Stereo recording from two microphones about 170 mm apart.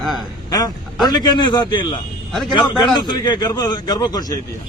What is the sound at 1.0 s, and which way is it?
A man's voice, 25° left (ahead or behind).